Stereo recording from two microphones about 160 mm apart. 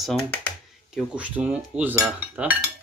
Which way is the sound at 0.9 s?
10° right (ahead or behind).